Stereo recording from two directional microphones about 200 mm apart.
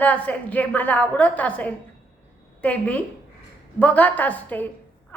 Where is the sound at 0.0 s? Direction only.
5° left (ahead or behind).